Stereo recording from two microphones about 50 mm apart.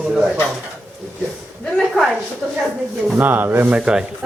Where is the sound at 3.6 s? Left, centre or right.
Centre.